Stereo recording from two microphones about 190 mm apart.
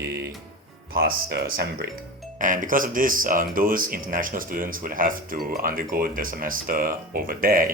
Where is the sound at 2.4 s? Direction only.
45° right (ahead or behind).